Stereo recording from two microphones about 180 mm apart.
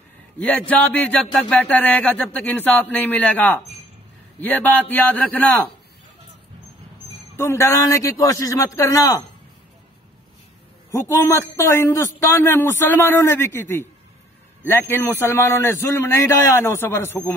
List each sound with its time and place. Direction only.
0.4 s speech: 5° left (ahead or behind)
7.3 s a man's voice: 15° left (ahead or behind)
10.9 s speech: 15° left (ahead or behind)